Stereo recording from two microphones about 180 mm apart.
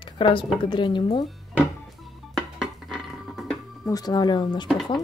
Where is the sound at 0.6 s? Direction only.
25° left (ahead or behind).